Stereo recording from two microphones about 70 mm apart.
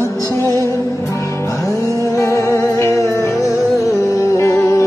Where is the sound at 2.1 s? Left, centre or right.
Left.